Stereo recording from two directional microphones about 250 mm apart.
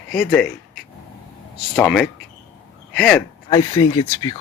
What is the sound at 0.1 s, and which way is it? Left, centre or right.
Speech, centre.